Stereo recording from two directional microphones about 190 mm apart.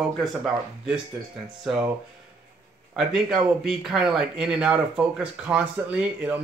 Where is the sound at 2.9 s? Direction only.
5° right (ahead or behind).